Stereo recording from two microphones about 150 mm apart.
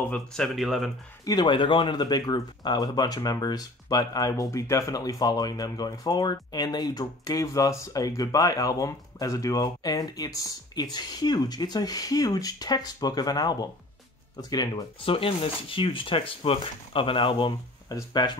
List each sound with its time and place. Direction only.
0.1 s speech: 5° left (ahead or behind)
1.2 s speech: 25° left (ahead or behind)